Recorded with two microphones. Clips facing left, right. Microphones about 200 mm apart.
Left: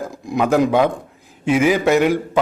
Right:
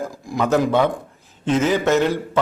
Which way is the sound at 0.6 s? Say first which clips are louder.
Left 2 dB; 10° left (ahead or behind).